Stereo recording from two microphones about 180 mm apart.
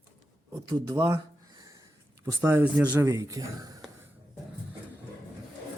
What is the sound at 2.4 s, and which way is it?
Speech, 15° right (ahead or behind).